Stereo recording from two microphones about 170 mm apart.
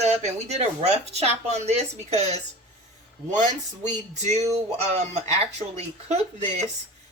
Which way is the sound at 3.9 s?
40° right (ahead or behind).